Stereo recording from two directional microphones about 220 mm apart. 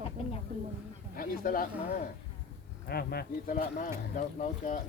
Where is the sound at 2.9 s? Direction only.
45° left (ahead or behind).